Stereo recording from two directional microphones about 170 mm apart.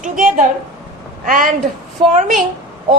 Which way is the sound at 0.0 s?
50° right (ahead or behind).